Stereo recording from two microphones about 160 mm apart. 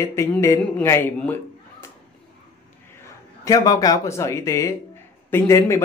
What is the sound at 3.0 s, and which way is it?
Speech, 20° left (ahead or behind).